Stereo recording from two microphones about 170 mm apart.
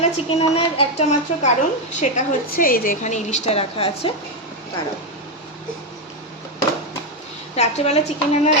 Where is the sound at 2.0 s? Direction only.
50° left (ahead or behind); by 4.1 s 35° left (ahead or behind).